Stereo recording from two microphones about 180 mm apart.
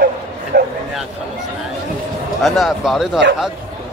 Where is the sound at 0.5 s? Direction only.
55° right (ahead or behind).